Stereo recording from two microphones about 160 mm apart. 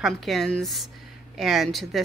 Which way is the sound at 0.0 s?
Centre (ahead or behind).